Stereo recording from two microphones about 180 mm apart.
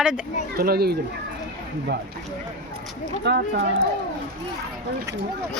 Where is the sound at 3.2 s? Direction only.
70° right (ahead or behind).